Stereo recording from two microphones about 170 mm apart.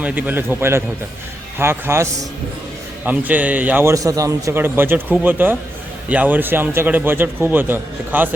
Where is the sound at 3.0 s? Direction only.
10° right (ahead or behind).